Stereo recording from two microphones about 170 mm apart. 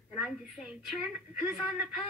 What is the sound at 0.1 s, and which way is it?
Speech, 5° right (ahead or behind).